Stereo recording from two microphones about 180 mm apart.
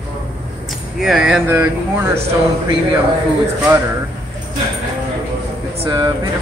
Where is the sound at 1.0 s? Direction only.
5° right (ahead or behind).